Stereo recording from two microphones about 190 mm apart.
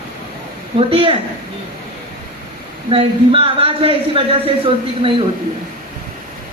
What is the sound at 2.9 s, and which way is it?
Speech, 30° right (ahead or behind).